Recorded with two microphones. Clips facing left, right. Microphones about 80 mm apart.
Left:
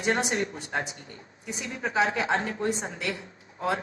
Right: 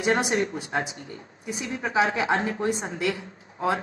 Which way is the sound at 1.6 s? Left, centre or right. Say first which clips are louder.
Right 2 dB; right.